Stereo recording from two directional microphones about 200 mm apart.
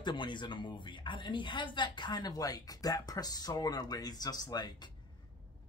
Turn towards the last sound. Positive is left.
turn(degrees=20)  # may be behind; listen again after turning